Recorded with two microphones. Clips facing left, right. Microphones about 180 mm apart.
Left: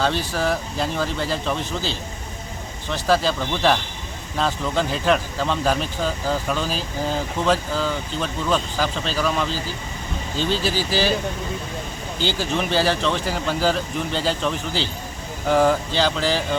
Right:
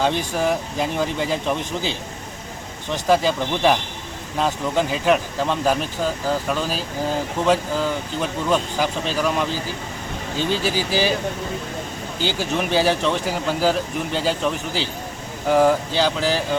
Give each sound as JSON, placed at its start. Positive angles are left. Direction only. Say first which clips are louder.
{"t": 0.0, "sound": "speech", "louder": "right 2 dB", "side_deg": -15}
{"t": 12.2, "sound": "speech", "louder": "even", "side_deg": -10}